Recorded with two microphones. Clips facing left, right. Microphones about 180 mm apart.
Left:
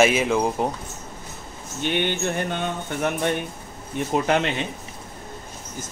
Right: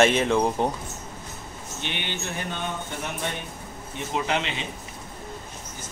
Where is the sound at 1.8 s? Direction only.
50° left (ahead or behind).